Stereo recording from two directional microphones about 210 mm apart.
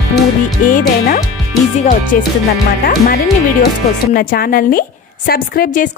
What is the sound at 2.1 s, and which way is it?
Speech, 45° left (ahead or behind).